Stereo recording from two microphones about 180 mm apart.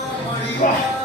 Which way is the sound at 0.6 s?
50° left (ahead or behind).